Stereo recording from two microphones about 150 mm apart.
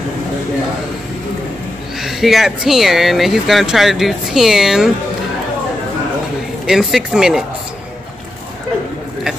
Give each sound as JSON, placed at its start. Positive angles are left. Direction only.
{"t": 2.0, "sound": "speech", "side_deg": 0}
{"t": 6.6, "sound": "speech", "side_deg": 0}